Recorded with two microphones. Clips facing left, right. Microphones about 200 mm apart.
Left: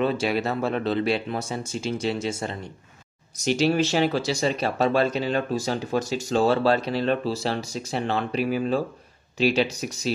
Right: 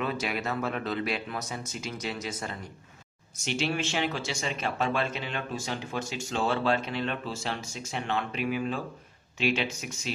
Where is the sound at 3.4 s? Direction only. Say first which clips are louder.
Left 9 dB; 40° left (ahead or behind).